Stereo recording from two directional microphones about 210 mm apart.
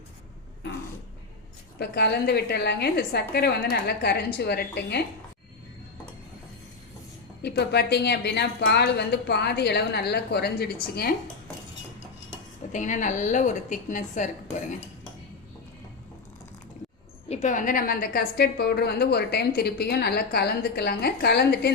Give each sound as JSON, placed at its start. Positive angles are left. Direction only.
{"t": 1.8, "sound": "a woman's voice", "side_deg": 50}
{"t": 7.4, "sound": "a woman's voice", "side_deg": 50}
{"t": 12.7, "sound": "a woman's voice", "side_deg": 35}
{"t": 17.2, "sound": "a woman's voice", "side_deg": 35}